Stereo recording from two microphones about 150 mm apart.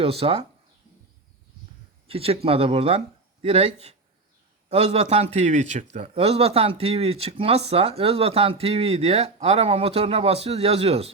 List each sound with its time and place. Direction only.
0.0 s speech: 40° right (ahead or behind)
2.0 s a man's voice: 40° right (ahead or behind)